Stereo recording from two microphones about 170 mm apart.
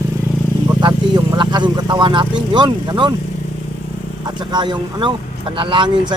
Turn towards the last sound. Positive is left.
turn(degrees=-30)  # may be behind; listen again after turning